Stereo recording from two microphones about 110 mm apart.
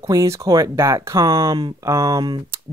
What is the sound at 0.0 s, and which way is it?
Speech, 30° right (ahead or behind).